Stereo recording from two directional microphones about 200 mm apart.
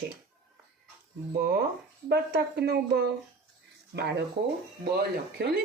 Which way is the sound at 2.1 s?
55° right (ahead or behind).